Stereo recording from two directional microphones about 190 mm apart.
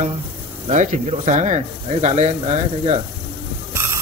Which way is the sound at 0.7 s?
40° right (ahead or behind).